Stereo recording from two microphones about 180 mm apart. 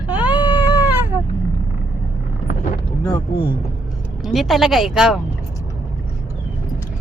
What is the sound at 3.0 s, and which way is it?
Speech, 20° left (ahead or behind).